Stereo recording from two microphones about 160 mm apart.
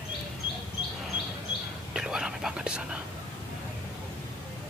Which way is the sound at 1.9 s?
5° right (ahead or behind).